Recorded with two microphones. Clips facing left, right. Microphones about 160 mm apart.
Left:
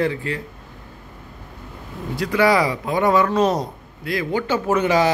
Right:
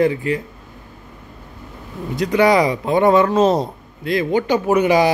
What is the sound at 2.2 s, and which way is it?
A man's voice, 20° right (ahead or behind).